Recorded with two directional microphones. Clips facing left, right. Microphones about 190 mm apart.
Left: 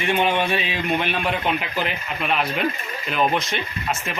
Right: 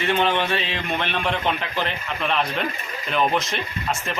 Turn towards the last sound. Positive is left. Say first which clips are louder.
# even
turn(degrees=0)  # may be behind; listen again after turning